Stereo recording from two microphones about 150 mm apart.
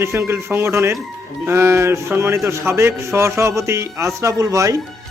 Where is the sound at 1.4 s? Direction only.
15° right (ahead or behind).